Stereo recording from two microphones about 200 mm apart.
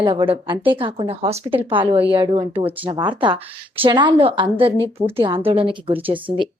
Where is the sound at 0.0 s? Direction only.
25° right (ahead or behind).